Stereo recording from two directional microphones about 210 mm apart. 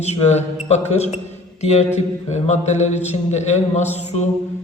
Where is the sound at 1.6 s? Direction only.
30° left (ahead or behind).